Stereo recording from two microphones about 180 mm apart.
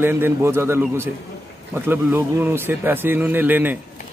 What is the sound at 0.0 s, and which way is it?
A man's voice, 10° right (ahead or behind).